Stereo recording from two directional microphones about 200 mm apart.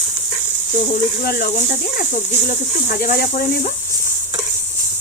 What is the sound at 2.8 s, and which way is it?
Speech, 45° left (ahead or behind).